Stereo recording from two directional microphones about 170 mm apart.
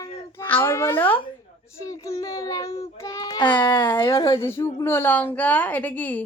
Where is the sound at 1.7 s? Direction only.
20° left (ahead or behind).